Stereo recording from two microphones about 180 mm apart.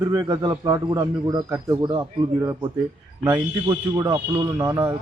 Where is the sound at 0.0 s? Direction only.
20° right (ahead or behind).